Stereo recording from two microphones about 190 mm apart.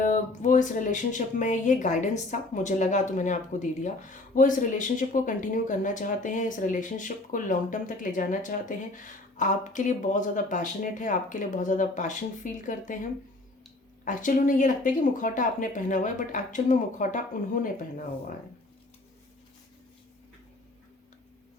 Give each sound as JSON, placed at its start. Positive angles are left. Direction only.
{"t": 0.0, "sound": "speech", "side_deg": 40}